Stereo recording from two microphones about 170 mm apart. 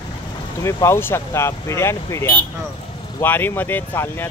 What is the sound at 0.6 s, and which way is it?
Speech, 20° left (ahead or behind).